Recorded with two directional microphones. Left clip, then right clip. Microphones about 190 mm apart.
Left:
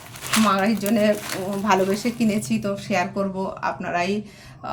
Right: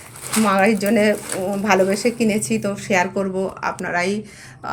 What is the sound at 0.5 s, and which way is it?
A woman's voice, 15° right (ahead or behind).